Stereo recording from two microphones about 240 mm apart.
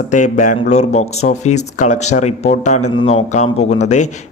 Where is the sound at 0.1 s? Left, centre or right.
Left.